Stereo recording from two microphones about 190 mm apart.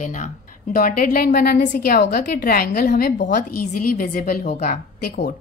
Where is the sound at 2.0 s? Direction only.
60° left (ahead or behind).